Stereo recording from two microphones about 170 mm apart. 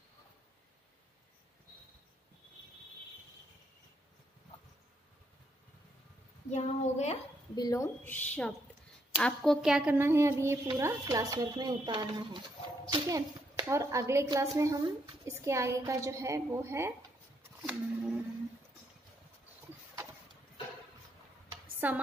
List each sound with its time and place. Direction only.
6.5 s speech: 40° left (ahead or behind)
7.5 s a child's voice: 20° left (ahead or behind); by 16.9 s 15° right (ahead or behind)
17.6 s speech: 5° right (ahead or behind)
21.7 s chopping: 10° right (ahead or behind)